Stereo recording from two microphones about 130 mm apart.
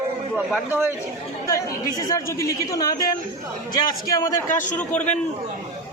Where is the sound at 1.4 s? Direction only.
25° left (ahead or behind).